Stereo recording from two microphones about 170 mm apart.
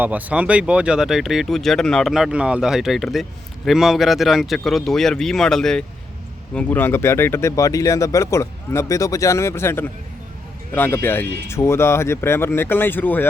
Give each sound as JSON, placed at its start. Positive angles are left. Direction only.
{"t": 0.0, "sound": "speech", "side_deg": -10}